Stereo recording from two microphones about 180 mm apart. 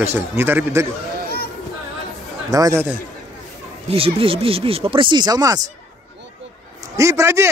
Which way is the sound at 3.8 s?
30° right (ahead or behind).